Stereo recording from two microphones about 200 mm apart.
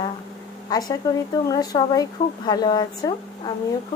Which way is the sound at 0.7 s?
20° left (ahead or behind).